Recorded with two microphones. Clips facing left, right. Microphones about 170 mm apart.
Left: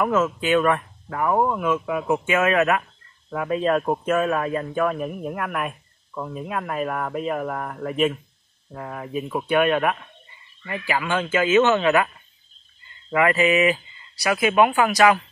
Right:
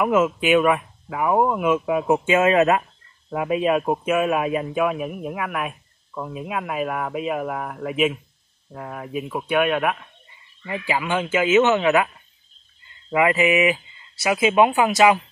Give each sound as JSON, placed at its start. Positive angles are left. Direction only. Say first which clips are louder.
{"t": 0.0, "sound": "speech", "louder": "right 2 dB", "side_deg": -15}
{"t": 10.6, "sound": "speech", "louder": "right 1 dB", "side_deg": -20}
{"t": 13.1, "sound": "speech", "louder": "even", "side_deg": -15}